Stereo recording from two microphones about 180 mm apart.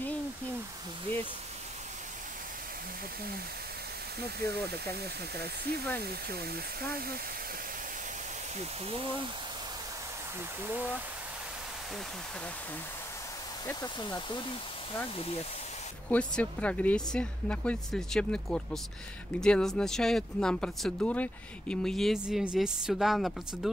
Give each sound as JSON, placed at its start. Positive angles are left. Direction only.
{"t": 4.2, "sound": "speech", "side_deg": -65}
{"t": 13.7, "sound": "speech", "side_deg": 25}
{"t": 16.1, "sound": "speech", "side_deg": 5}